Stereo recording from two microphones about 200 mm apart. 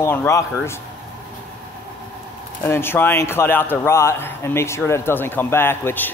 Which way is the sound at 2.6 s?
10° left (ahead or behind).